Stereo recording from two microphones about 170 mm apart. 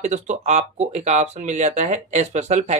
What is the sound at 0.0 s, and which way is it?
Speech, 45° right (ahead or behind).